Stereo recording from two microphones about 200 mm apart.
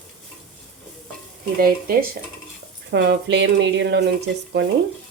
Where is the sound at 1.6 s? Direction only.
45° right (ahead or behind).